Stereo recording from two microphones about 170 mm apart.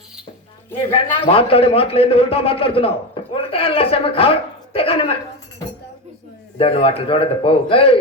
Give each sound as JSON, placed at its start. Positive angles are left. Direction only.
{"t": 1.2, "sound": "a man's voice", "side_deg": 35}
{"t": 3.2, "sound": "a sound", "side_deg": 30}
{"t": 3.5, "sound": "a man's voice", "side_deg": 35}
{"t": 6.6, "sound": "a man's voice", "side_deg": 35}